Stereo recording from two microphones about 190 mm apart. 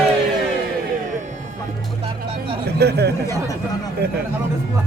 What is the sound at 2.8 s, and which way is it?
Speech, 60° right (ahead or behind).